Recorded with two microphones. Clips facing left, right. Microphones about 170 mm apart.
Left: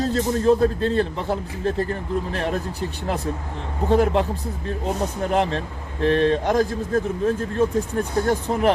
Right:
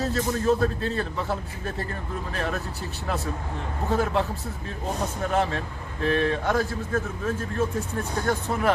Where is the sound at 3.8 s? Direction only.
30° left (ahead or behind).